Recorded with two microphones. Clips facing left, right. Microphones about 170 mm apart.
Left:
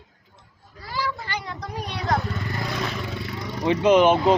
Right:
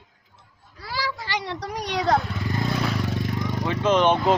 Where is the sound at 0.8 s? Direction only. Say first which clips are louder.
Left 1 dB; 90° right.